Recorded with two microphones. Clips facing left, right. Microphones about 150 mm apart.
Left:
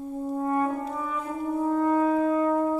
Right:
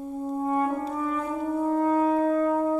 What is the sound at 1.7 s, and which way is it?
Shofar, 25° right (ahead or behind).